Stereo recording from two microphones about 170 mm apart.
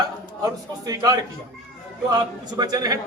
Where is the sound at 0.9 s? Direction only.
25° right (ahead or behind).